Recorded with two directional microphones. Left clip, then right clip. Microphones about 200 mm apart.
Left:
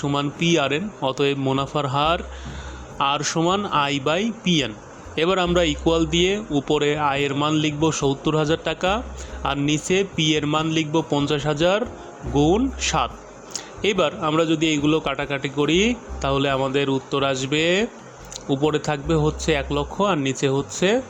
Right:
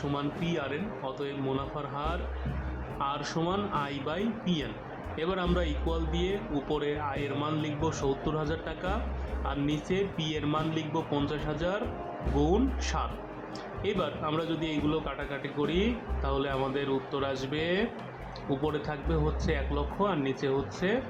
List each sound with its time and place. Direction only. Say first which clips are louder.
0.1 s a man's voice: left 14 dB; 45° left (ahead or behind)